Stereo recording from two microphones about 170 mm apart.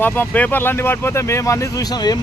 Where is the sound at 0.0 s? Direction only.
10° left (ahead or behind).